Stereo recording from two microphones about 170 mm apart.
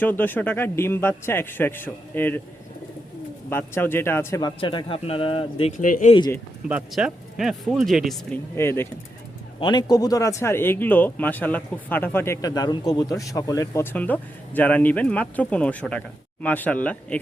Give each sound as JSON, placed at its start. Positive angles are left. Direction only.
{"t": 0.0, "sound": "speech", "side_deg": 10}
{"t": 3.5, "sound": "speech", "side_deg": 10}
{"t": 6.7, "sound": "speech", "side_deg": -5}
{"t": 8.5, "sound": "speech", "side_deg": 15}
{"t": 9.6, "sound": "speech", "side_deg": 25}